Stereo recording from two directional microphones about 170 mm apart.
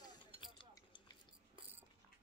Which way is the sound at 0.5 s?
25° left (ahead or behind).